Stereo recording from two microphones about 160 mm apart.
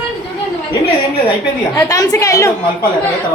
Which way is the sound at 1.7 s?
20° left (ahead or behind).